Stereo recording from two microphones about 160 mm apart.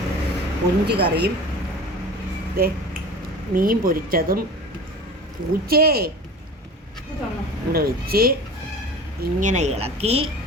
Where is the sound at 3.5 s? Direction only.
60° right (ahead or behind).